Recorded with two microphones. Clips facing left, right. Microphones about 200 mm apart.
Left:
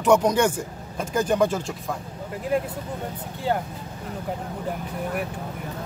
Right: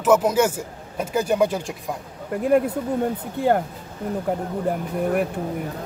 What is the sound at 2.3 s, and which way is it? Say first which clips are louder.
Speech: right 7 dB; 55° right (ahead or behind).